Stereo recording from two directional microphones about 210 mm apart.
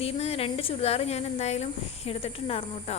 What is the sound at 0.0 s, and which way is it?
A woman's voice, 30° left (ahead or behind).